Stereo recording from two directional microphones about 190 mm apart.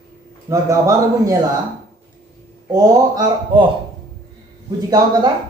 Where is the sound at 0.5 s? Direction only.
15° right (ahead or behind).